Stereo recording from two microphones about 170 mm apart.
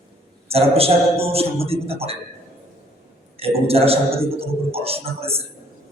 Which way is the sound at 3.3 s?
35° right (ahead or behind).